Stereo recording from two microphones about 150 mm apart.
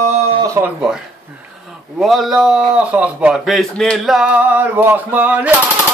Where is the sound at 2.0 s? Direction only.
Centre (ahead or behind).